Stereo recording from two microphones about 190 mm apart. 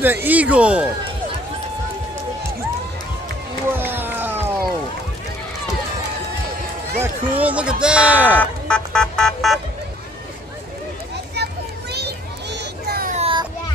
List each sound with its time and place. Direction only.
0.0 s speech: 10° right (ahead or behind)
3.7 s a sound: 10° right (ahead or behind)
7.0 s speech: 10° right (ahead or behind)
8.4 s speech: 5° left (ahead or behind)
11.9 s children playing: 60° right (ahead or behind)
13.1 s a sound: 30° right (ahead or behind)